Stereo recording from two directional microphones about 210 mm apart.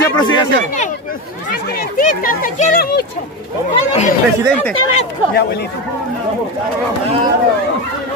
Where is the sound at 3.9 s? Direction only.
35° left (ahead or behind).